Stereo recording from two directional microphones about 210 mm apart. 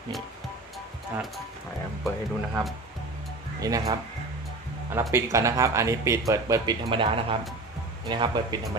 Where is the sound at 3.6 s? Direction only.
15° right (ahead or behind).